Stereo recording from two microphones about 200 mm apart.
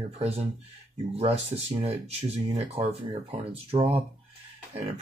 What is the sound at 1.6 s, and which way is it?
Speech, 30° right (ahead or behind).